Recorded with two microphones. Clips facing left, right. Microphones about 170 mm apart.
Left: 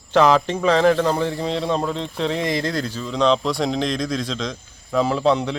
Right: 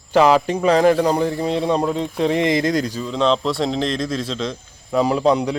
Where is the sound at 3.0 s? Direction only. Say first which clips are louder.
Left 2 dB; centre (ahead or behind).